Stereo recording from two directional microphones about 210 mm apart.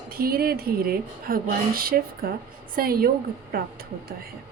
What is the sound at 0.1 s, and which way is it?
A woman's voice, 45° right (ahead or behind).